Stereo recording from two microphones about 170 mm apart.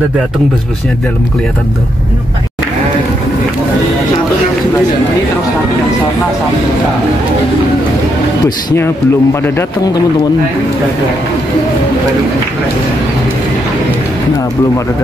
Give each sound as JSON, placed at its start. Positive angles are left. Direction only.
{"t": 8.5, "sound": "a man's voice", "side_deg": 15}